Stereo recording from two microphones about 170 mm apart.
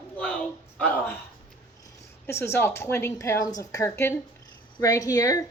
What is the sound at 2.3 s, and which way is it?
A woman's voice, 15° left (ahead or behind).